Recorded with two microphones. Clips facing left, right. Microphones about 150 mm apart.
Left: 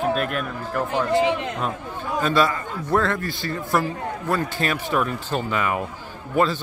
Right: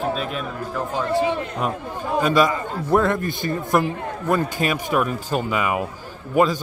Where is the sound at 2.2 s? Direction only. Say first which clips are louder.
Right 2 dB; 10° right (ahead or behind).